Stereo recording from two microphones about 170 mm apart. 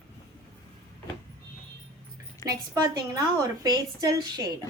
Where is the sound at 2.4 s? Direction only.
20° right (ahead or behind).